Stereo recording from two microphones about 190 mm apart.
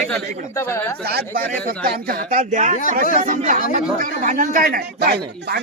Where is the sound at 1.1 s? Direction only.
55° right (ahead or behind).